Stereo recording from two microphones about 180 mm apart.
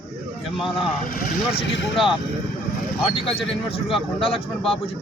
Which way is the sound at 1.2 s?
55° left (ahead or behind).